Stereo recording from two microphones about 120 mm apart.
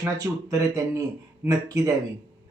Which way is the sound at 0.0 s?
30° right (ahead or behind).